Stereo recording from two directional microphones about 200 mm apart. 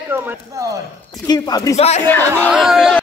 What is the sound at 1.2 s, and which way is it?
Speech, 20° left (ahead or behind).